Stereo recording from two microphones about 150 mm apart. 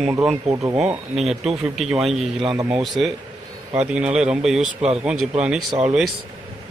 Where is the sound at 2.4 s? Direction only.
25° right (ahead or behind).